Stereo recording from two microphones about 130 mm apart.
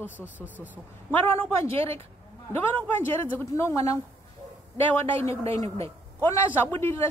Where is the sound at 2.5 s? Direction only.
15° left (ahead or behind).